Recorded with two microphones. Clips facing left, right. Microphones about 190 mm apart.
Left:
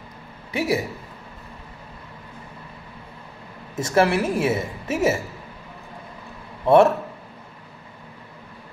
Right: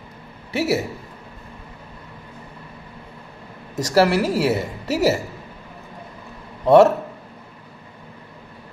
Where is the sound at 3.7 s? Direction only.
40° right (ahead or behind).